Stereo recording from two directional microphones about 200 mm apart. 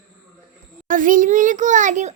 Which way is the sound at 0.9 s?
40° right (ahead or behind).